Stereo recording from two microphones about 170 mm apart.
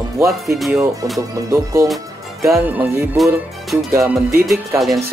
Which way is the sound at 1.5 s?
20° right (ahead or behind).